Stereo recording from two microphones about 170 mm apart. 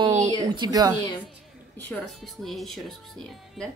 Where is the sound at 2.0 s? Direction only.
Centre (ahead or behind).